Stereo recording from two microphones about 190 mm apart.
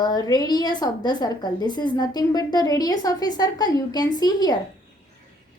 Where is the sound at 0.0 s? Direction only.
20° left (ahead or behind).